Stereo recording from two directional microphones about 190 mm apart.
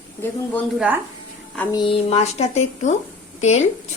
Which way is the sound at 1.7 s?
25° left (ahead or behind).